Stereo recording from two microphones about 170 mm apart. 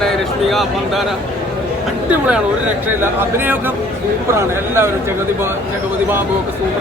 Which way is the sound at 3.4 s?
10° right (ahead or behind).